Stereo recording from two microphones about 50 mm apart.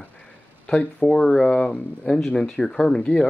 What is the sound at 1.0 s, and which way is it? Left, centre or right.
Speech, centre.